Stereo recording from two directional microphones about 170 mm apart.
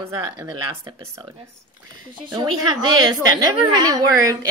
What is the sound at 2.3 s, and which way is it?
Speech, 25° right (ahead or behind).